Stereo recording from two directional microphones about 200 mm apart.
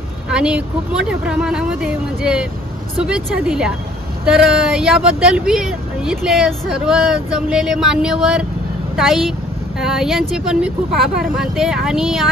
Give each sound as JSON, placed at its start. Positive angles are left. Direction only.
{"t": 0.3, "sound": "speech", "side_deg": -5}